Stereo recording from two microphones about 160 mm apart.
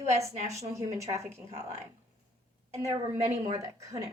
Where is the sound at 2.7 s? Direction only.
20° right (ahead or behind).